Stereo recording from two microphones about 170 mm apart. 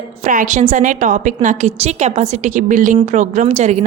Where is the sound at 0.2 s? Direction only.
50° right (ahead or behind).